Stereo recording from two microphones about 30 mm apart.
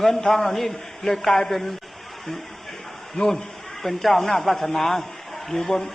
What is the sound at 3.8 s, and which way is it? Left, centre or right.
A man's voice, centre.